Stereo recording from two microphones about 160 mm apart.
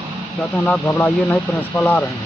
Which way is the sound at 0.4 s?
10° left (ahead or behind).